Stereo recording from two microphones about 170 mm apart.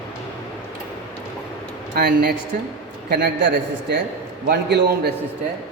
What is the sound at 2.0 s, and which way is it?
Speech, 70° right (ahead or behind).